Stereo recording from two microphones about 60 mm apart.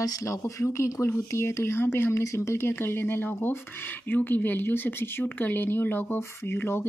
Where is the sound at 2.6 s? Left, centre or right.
Left.